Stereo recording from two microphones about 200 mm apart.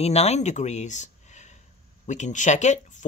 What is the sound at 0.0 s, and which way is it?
Speech, 30° left (ahead or behind).